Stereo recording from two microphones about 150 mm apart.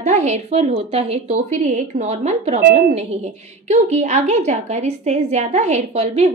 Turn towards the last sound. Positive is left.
turn(degrees=-45)  # may be behind; listen again after turning